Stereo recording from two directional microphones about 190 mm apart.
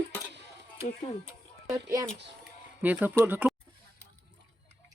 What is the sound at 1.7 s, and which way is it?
Speech, 15° right (ahead or behind).